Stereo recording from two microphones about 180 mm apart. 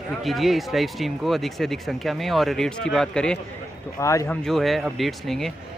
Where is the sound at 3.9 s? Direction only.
15° left (ahead or behind).